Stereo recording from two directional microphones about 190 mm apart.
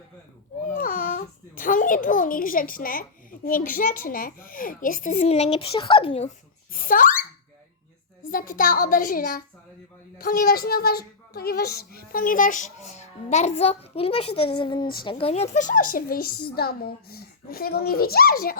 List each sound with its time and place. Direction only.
0.7 s a child's voice: 45° left (ahead or behind); by 6.3 s 30° left (ahead or behind)
6.7 s speech: 45° left (ahead or behind)